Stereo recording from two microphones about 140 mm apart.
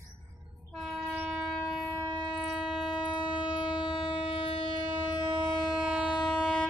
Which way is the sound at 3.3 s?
35° left (ahead or behind).